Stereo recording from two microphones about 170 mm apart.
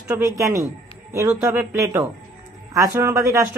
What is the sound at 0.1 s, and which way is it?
A woman's voice, 20° right (ahead or behind).